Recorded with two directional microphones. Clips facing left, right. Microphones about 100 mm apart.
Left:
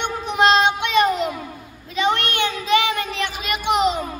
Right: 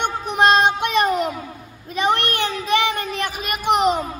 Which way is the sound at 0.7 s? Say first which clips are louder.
Even; 45° right (ahead or behind).